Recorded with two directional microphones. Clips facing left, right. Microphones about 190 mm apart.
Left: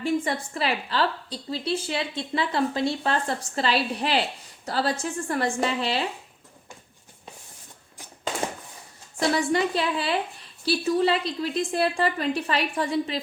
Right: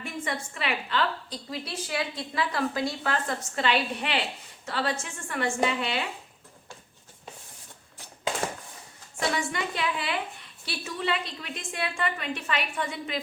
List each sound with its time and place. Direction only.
0.0 s a woman's voice: 35° left (ahead or behind)
9.3 s a woman's voice: 35° left (ahead or behind)